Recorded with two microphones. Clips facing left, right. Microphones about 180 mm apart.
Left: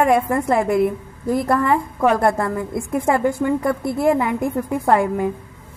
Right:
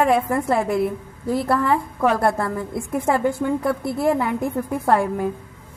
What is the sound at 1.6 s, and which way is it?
Speech, 10° left (ahead or behind).